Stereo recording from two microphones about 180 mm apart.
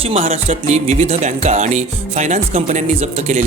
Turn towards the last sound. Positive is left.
turn(degrees=-40)  # may be behind; listen again after turning